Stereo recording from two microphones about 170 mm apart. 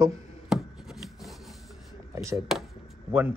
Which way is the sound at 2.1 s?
15° right (ahead or behind).